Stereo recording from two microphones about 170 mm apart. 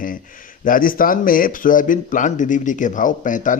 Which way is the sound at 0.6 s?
55° left (ahead or behind).